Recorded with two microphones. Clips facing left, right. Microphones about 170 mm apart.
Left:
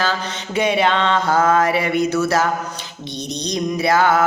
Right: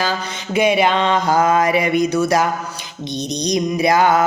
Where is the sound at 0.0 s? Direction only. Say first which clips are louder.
Even; 10° right (ahead or behind).